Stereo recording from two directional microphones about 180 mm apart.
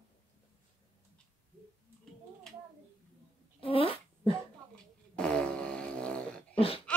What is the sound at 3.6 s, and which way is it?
Fart, 30° left (ahead or behind).